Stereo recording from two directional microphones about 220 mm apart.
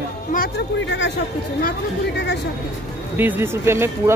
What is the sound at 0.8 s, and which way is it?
Speech, 55° left (ahead or behind).